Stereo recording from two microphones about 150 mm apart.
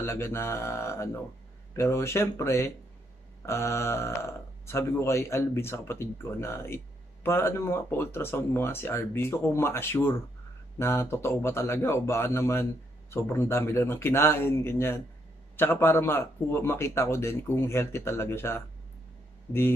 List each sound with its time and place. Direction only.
0.0 s speech: 15° left (ahead or behind)